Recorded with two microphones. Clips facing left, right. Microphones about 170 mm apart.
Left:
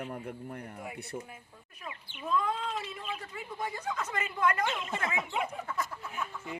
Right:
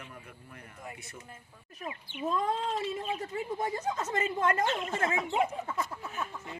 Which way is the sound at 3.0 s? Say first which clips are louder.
Right 5 dB; 25° right (ahead or behind).